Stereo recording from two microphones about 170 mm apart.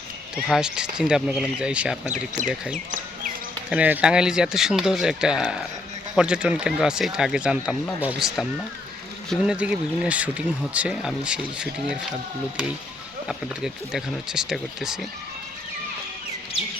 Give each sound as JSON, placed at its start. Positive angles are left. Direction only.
{"t": 0.4, "sound": "speech", "side_deg": -5}
{"t": 2.7, "sound": "a sound", "side_deg": -50}
{"t": 3.7, "sound": "speech", "side_deg": -10}
{"t": 13.2, "sound": "speech", "side_deg": -5}